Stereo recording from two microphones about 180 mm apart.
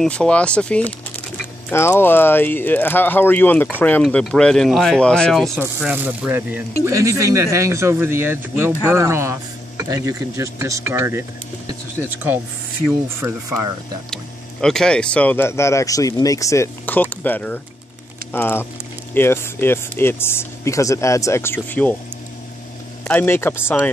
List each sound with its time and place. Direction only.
0.0 s speech: 5° left (ahead or behind)
5.6 s speech: 10° right (ahead or behind)
13.2 s speech: 15° right (ahead or behind)
14.1 s speech: 5° left (ahead or behind)
23.0 s speech: 10° left (ahead or behind)